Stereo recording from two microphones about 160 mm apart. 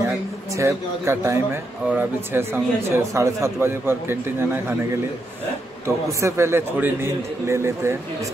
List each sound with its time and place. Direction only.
0.6 s speech: 15° right (ahead or behind)
6.2 s speech: 15° right (ahead or behind)